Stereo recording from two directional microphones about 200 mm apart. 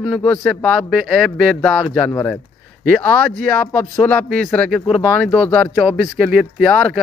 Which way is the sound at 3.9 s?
10° left (ahead or behind).